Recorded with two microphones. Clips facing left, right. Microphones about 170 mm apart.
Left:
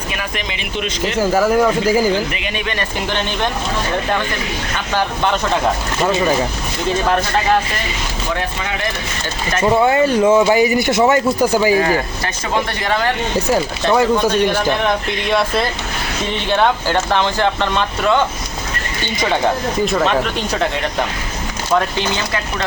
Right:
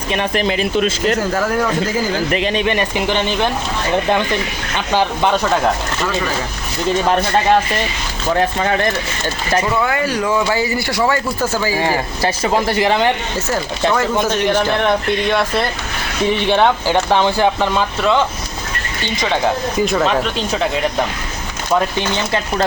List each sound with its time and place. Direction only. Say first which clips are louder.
0.1 s speech: right 10 dB; 35° right (ahead or behind)
1.0 s speech: left 1 dB; 10° left (ahead or behind)
2.3 s speech: right 8 dB; 35° right (ahead or behind)
2.6 s speech: right 5 dB; 15° right (ahead or behind)
6.0 s speech: left 4 dB; 25° left (ahead or behind)
9.6 s speech: left 6 dB; 25° left (ahead or behind)
11.8 s speech: even; 30° right (ahead or behind)
13.5 s speech: left 1 dB; 15° left (ahead or behind)
15.3 s speech: left 3 dB; centre (ahead or behind)
16.5 s speech: left 1 dB; 15° right (ahead or behind)
19.8 s speech: right 1 dB; centre (ahead or behind)